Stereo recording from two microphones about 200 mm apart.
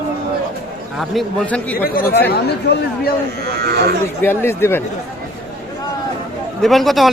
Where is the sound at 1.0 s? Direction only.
5° left (ahead or behind).